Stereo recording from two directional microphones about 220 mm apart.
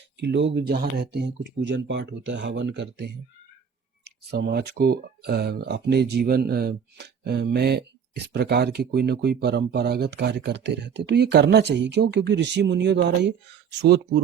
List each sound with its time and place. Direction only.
0.2 s speech: 50° right (ahead or behind)